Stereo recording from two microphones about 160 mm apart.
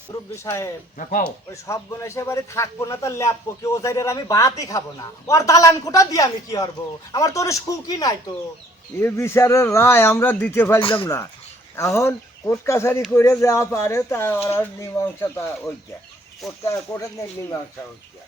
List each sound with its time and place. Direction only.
0.3 s a man's voice: 20° left (ahead or behind)
10.8 s speech: 35° left (ahead or behind)
11.8 s speech: 15° left (ahead or behind)
16.6 s a man's voice: 20° left (ahead or behind)